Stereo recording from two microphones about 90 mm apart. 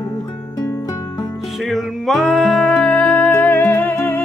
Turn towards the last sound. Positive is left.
turn(degrees=20)  # may be behind; listen again after turning